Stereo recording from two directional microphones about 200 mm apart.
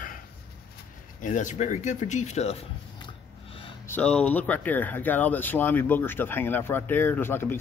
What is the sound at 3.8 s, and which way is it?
Speech, 5° left (ahead or behind).